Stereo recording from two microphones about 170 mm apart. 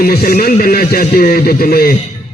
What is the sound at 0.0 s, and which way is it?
A man's voice, 60° left (ahead or behind).